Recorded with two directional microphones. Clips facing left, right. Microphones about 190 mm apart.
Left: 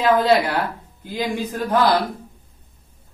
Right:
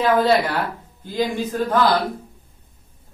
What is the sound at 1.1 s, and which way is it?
Speech, 10° left (ahead or behind).